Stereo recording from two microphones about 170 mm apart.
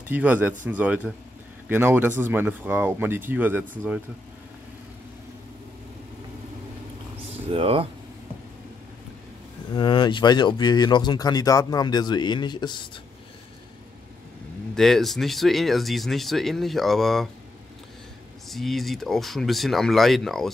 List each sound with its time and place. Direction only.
0.1 s speech: 10° right (ahead or behind)
7.5 s speech: 35° right (ahead or behind)
9.8 s speech: 25° left (ahead or behind)
14.8 s speech: centre (ahead or behind)
18.5 s speech: centre (ahead or behind)